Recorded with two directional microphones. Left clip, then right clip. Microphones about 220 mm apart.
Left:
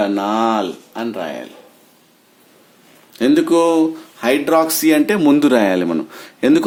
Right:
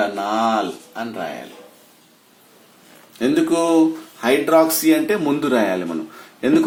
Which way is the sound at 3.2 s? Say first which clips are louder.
Left 4 dB; 40° left (ahead or behind).